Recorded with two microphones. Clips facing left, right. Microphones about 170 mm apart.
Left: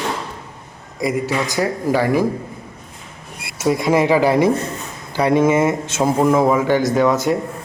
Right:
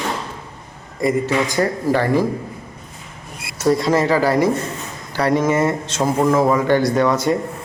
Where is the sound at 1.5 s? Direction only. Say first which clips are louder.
Left 2 dB; 5° left (ahead or behind).